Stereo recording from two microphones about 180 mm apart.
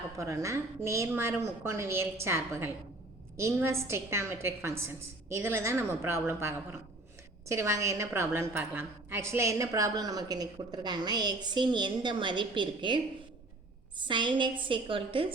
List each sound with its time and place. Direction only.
0.2 s a woman's voice: 15° right (ahead or behind)